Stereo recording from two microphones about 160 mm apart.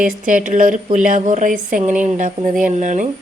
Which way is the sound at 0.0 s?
55° right (ahead or behind).